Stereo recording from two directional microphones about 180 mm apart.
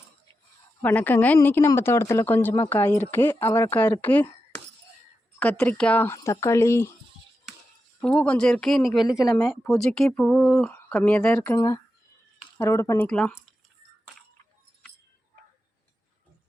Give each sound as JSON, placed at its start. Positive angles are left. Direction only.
{"t": 0.8, "sound": "a woman's voice", "side_deg": 10}
{"t": 8.0, "sound": "speech", "side_deg": 5}
{"t": 11.5, "sound": "a woman's voice", "side_deg": 15}
{"t": 13.1, "sound": "speech", "side_deg": 5}